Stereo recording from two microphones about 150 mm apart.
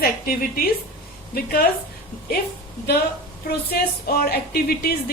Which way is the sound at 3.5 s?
90° left.